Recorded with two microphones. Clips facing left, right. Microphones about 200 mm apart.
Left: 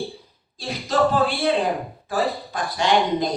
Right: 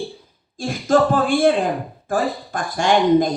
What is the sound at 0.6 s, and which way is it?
Speech, 50° right (ahead or behind).